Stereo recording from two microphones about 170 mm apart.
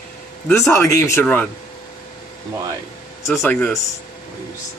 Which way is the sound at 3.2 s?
15° left (ahead or behind).